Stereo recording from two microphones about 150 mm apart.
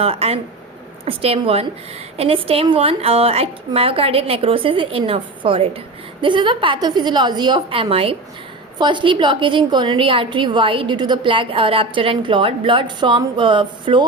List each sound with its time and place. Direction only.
0.0 s a woman's voice: 40° right (ahead or behind)